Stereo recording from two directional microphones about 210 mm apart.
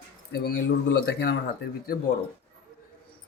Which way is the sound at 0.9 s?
50° left (ahead or behind).